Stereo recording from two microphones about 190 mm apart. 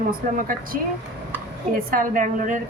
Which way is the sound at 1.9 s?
45° right (ahead or behind).